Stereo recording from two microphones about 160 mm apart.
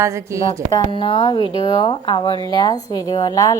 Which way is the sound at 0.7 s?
30° left (ahead or behind).